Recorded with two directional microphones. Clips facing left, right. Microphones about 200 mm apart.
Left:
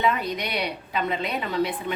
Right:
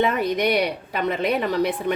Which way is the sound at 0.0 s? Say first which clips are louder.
Right 5 dB; 55° right (ahead or behind).